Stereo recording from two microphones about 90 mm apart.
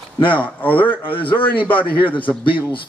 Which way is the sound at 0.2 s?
20° left (ahead or behind).